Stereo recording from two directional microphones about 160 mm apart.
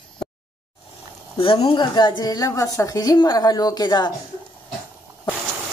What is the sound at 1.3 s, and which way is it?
A woman's voice, 35° left (ahead or behind).